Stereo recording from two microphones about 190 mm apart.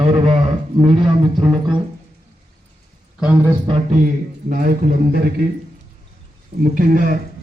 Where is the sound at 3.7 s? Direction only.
40° right (ahead or behind).